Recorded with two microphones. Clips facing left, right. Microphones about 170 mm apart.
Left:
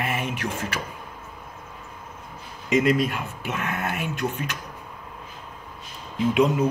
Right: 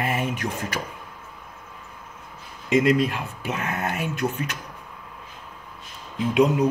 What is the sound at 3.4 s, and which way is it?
Speech, 35° right (ahead or behind).